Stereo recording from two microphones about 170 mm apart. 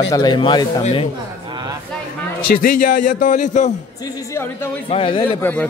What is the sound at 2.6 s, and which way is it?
Speech, 50° left (ahead or behind).